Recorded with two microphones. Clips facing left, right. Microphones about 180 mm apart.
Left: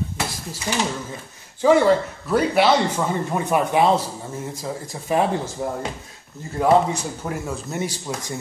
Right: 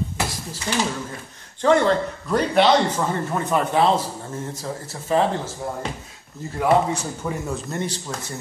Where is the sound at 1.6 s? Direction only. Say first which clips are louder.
Left 2 dB; 5° left (ahead or behind).